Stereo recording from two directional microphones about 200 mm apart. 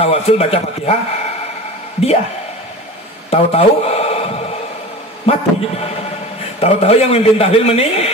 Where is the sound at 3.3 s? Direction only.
30° left (ahead or behind).